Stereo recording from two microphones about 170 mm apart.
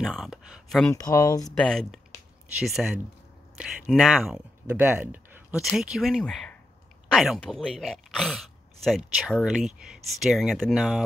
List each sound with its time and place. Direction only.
0.0 s speech: centre (ahead or behind)
0.9 s speech: 20° left (ahead or behind)
1.6 s speech: 5° left (ahead or behind)